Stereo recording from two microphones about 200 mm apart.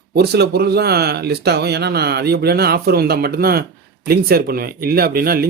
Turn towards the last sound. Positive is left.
turn(degrees=-50)  # may be behind; listen again after turning